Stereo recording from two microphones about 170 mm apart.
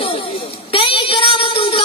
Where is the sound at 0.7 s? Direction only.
30° left (ahead or behind).